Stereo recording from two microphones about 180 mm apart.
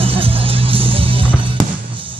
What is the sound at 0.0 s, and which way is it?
Music, 30° right (ahead or behind).